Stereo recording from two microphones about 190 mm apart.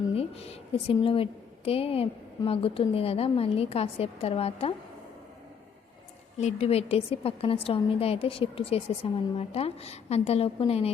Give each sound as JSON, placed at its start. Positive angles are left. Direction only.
{"t": 0.1, "sound": "a woman's voice", "side_deg": 30}
{"t": 6.4, "sound": "a woman's voice", "side_deg": 35}